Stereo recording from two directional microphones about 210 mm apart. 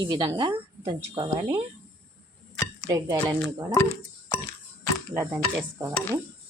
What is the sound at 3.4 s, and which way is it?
Speech, 10° left (ahead or behind).